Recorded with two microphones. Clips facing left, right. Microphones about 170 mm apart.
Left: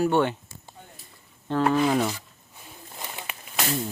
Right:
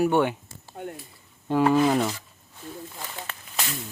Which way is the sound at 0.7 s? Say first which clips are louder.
Right 17 dB; 70° right (ahead or behind).